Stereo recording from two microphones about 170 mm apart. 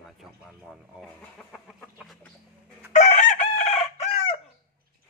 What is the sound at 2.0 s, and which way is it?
Chicken, centre (ahead or behind).